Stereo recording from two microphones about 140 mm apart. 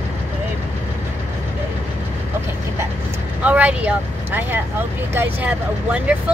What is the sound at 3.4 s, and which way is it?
Speech, 10° right (ahead or behind).